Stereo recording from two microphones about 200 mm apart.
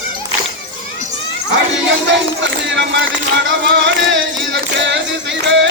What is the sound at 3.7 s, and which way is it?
Music, 65° right (ahead or behind).